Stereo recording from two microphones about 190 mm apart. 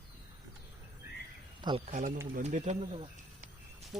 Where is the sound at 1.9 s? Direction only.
40° right (ahead or behind).